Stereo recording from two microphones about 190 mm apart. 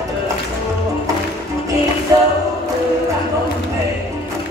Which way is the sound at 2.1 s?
20° right (ahead or behind).